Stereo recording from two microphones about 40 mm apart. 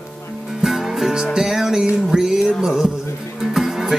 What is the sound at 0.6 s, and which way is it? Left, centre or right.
Music, centre.